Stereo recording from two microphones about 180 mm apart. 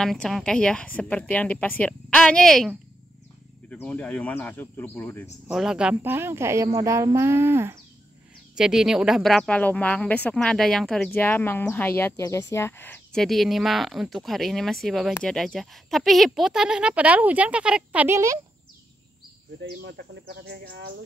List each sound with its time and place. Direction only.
0.0 s speech: centre (ahead or behind)
5.5 s speech: centre (ahead or behind)
8.5 s speech: 5° right (ahead or behind)
19.6 s speech: 60° right (ahead or behind)